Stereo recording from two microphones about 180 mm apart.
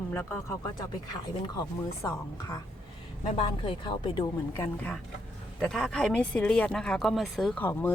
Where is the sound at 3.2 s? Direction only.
30° left (ahead or behind).